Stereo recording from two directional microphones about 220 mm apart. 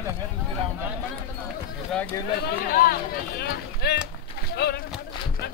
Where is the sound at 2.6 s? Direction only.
40° left (ahead or behind).